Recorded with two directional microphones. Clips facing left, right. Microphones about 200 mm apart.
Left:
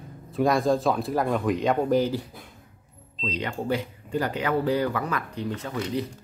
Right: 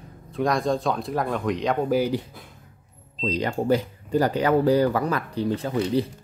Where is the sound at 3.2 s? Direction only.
40° right (ahead or behind).